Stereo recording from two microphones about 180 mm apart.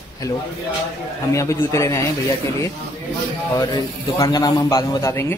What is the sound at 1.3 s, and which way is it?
Speech, 15° left (ahead or behind).